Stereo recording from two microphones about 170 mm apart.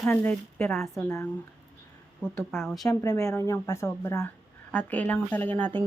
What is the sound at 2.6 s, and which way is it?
Speech, centre (ahead or behind).